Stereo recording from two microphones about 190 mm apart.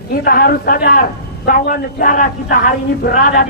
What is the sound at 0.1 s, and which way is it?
A woman's voice, 55° left (ahead or behind).